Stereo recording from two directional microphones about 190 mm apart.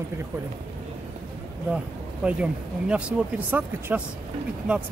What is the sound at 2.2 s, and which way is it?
Speech, 5° right (ahead or behind).